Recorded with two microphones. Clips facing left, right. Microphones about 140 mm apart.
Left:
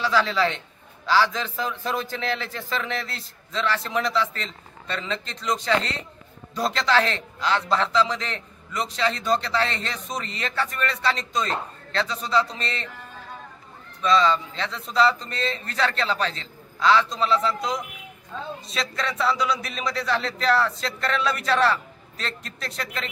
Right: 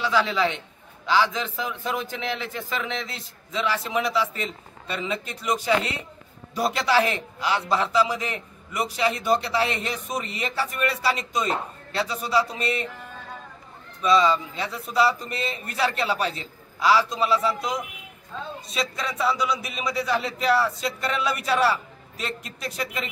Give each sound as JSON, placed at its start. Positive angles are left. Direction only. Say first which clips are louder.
{"t": 0.0, "sound": "a man's voice", "louder": "left 1 dB", "side_deg": -20}
{"t": 3.1, "sound": "a man's voice", "louder": "even", "side_deg": 0}
{"t": 14.0, "sound": "a man's voice", "louder": "even", "side_deg": -10}